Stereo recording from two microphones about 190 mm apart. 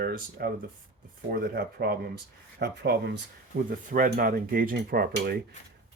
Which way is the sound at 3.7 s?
45° right (ahead or behind).